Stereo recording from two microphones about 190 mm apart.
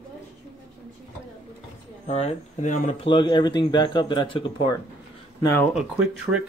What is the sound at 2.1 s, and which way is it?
Speech, 35° left (ahead or behind).